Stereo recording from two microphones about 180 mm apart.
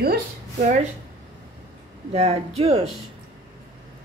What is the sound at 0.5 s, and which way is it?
Speech, 45° right (ahead or behind).